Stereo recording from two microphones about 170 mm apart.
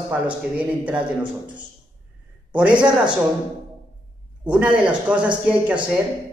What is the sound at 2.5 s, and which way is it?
Speech, 5° right (ahead or behind).